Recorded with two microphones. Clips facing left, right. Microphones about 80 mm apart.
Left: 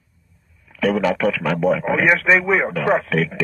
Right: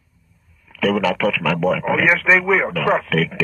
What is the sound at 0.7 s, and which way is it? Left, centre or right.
Speech, left.